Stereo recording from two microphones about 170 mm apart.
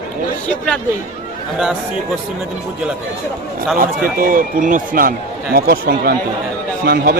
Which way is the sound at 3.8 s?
55° right (ahead or behind).